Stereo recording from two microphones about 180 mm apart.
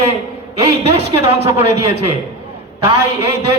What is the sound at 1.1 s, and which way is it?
Speech, 35° right (ahead or behind).